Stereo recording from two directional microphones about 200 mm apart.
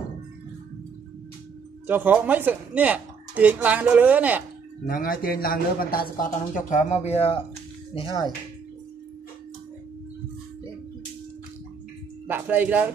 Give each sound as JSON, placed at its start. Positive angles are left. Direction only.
{"t": 1.9, "sound": "speech", "side_deg": -10}
{"t": 4.8, "sound": "a man's voice", "side_deg": 45}
{"t": 12.3, "sound": "speech", "side_deg": -10}